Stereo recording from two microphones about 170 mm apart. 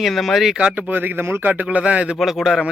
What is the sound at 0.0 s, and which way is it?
A man's voice, centre (ahead or behind).